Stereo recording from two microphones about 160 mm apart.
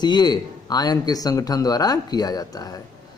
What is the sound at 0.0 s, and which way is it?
A man's voice, 25° left (ahead or behind).